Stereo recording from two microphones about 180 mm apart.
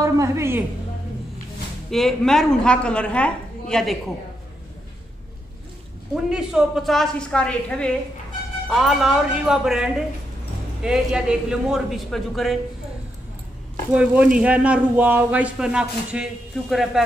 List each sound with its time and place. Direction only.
0.0 s a man's voice: 15° right (ahead or behind)
1.9 s a woman's voice: centre (ahead or behind)
6.1 s a woman's voice: 5° right (ahead or behind)
13.9 s a man's voice: 5° right (ahead or behind)